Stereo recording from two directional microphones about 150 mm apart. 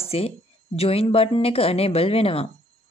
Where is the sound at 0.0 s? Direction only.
40° left (ahead or behind).